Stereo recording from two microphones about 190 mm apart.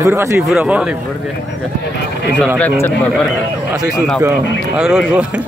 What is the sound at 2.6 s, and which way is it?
Speech, 10° left (ahead or behind).